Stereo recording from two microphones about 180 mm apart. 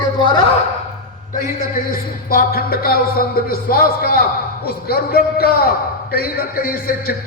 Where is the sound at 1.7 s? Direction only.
50° left (ahead or behind).